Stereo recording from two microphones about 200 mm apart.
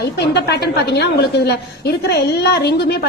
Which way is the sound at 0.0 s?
55° left (ahead or behind).